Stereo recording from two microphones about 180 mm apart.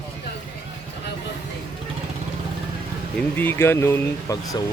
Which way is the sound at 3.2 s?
10° left (ahead or behind).